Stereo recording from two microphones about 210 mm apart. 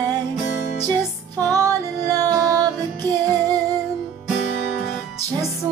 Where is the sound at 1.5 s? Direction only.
15° right (ahead or behind).